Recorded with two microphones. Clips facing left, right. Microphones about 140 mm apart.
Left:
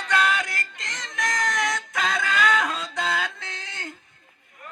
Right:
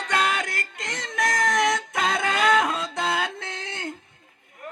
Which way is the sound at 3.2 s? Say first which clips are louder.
Right 3 dB; 60° right (ahead or behind).